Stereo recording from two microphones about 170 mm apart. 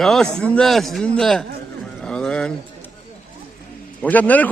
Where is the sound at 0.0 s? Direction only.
Centre (ahead or behind).